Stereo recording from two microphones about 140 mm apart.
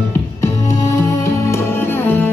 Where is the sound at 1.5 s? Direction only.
15° left (ahead or behind).